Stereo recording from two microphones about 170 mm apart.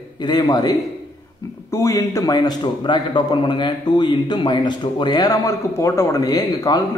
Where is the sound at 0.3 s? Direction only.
25° left (ahead or behind).